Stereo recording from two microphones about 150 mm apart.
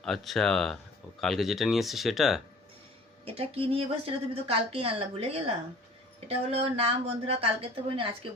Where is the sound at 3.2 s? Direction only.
40° right (ahead or behind).